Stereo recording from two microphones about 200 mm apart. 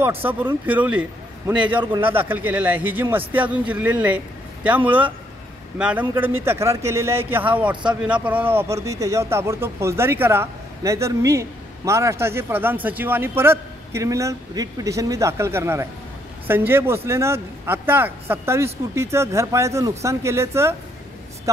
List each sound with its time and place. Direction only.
0.0 s speech: 10° right (ahead or behind)
1.8 s a man's voice: 25° right (ahead or behind)
2.1 s speech: 10° right (ahead or behind)